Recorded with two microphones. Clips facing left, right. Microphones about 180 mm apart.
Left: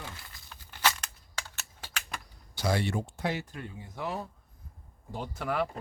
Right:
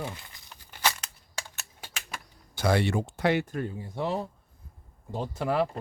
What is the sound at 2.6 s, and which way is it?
Speech, 65° right (ahead or behind).